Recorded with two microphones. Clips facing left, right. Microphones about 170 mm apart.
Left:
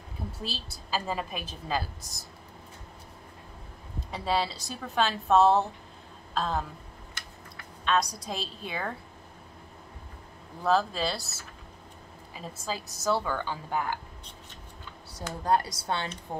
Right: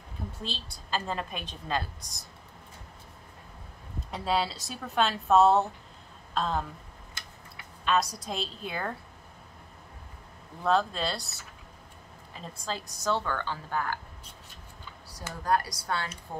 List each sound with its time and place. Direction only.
0.4 s a woman's voice: 5° left (ahead or behind)
4.1 s a woman's voice: centre (ahead or behind)
7.8 s a woman's voice: centre (ahead or behind)
10.6 s a woman's voice: 5° left (ahead or behind)
15.4 s speech: 25° left (ahead or behind)